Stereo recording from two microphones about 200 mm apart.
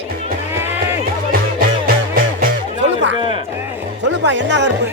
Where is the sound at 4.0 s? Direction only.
60° right (ahead or behind).